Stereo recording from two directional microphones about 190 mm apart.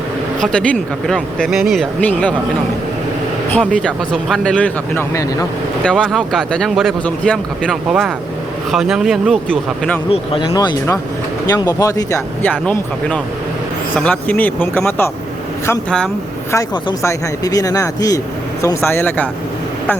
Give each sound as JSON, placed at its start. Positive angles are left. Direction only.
{"t": 0.3, "sound": "speech", "side_deg": 5}
{"t": 3.5, "sound": "speech", "side_deg": 5}
{"t": 5.8, "sound": "speech", "side_deg": 5}
{"t": 10.1, "sound": "speech", "side_deg": 25}
{"t": 16.5, "sound": "speech", "side_deg": 20}